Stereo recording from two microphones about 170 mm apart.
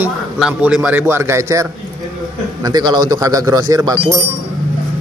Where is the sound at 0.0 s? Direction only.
5° right (ahead or behind).